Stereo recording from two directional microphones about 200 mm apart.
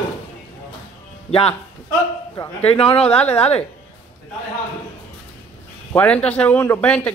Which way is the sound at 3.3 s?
30° left (ahead or behind).